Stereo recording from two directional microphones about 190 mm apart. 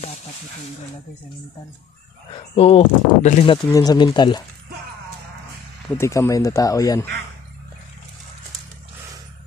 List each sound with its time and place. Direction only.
2.5 s speech: 30° left (ahead or behind)
3.7 s speech: 20° left (ahead or behind)
5.9 s speech: 15° left (ahead or behind)